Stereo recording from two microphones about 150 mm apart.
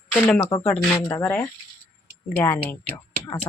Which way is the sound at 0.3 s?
20° left (ahead or behind).